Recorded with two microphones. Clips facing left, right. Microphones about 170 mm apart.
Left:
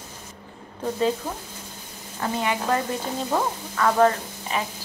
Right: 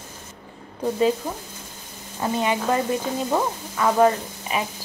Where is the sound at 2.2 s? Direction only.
20° right (ahead or behind).